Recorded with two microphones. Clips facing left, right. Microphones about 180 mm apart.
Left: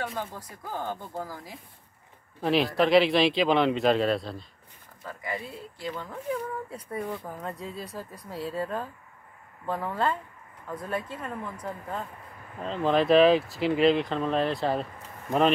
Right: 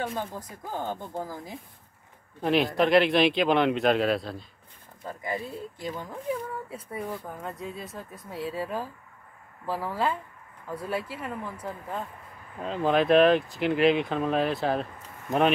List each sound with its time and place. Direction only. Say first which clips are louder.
0.0 s speech: right 2 dB; 15° right (ahead or behind)
2.4 s speech: even; centre (ahead or behind)
5.0 s speech: right 2 dB; 25° right (ahead or behind)
6.7 s speech: left 1 dB; 5° right (ahead or behind)